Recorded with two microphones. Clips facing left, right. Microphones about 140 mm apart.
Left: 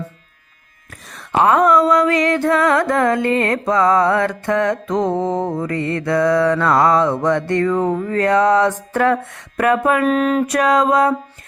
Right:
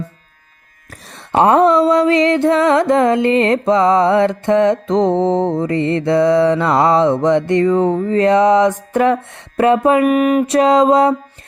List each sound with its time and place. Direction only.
1.4 s music: 30° right (ahead or behind)
10.1 s a sound: 15° right (ahead or behind)
10.4 s music: 25° right (ahead or behind)